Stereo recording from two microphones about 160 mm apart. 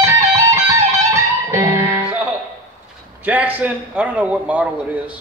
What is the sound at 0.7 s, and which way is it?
Music, 20° right (ahead or behind).